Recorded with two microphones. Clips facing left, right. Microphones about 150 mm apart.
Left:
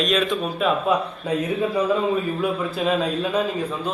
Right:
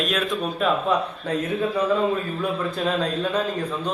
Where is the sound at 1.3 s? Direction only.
10° left (ahead or behind).